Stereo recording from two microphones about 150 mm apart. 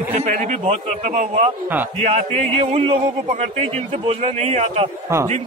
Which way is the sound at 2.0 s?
45° right (ahead or behind).